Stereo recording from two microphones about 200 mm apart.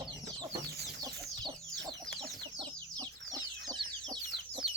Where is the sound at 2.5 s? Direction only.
20° right (ahead or behind).